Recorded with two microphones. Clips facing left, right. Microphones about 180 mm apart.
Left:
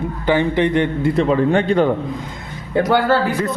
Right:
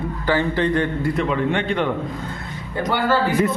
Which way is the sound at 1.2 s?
35° left (ahead or behind).